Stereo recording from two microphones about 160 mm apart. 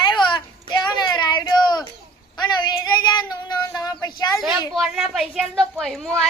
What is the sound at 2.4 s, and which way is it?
Child singing, 25° left (ahead or behind).